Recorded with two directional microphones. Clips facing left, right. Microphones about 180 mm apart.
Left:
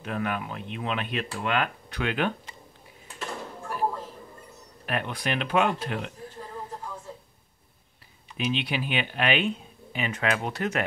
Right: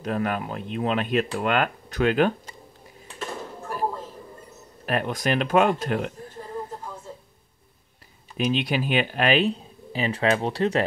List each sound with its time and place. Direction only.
0.0 s speech: 40° right (ahead or behind)
4.8 s speech: 40° right (ahead or behind)
8.4 s speech: 40° right (ahead or behind)